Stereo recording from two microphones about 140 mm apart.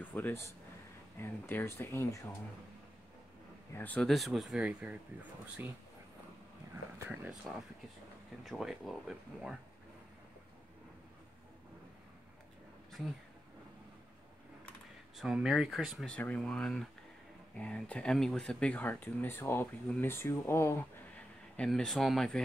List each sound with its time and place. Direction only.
0.0 s speech: 10° left (ahead or behind)
3.7 s speech: 10° left (ahead or behind)
4.1 s speech: centre (ahead or behind)
7.1 s speech: 5° right (ahead or behind)
15.1 s speech: 5° right (ahead or behind); by 20.7 s 20° left (ahead or behind)
21.5 s speech: 5° left (ahead or behind)